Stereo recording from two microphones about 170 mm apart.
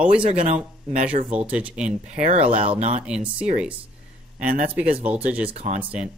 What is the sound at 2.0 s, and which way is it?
Speech, 45° right (ahead or behind).